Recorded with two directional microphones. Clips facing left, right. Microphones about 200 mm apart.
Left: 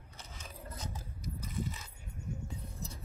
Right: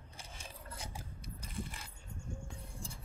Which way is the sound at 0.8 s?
10° right (ahead or behind).